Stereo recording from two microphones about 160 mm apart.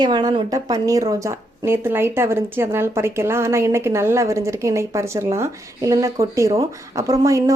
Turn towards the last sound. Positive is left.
turn(degrees=-20)  # may be behind; listen again after turning